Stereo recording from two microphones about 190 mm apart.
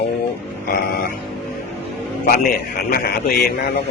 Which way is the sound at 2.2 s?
50° left (ahead or behind).